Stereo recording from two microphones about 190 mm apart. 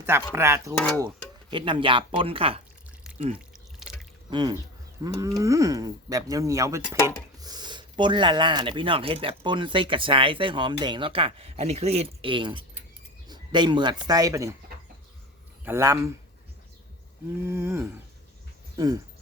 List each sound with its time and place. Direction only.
0.0 s speech: 10° right (ahead or behind)
0.8 s speech: 10° left (ahead or behind)
1.0 s speech: 25° right (ahead or behind)
3.3 s drip: 5° right (ahead or behind)
4.3 s speech: 20° right (ahead or behind)
13.2 s keys jangling: 20° right (ahead or behind)
14.1 s speech: 20° right (ahead or behind)
15.6 s speech: 15° right (ahead or behind)
17.4 s speech: 15° right (ahead or behind)